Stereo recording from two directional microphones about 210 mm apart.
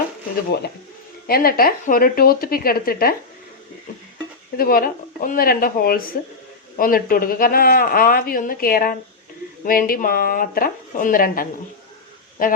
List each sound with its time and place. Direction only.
1.3 s speech: 45° left (ahead or behind)
4.5 s speech: 45° left (ahead or behind)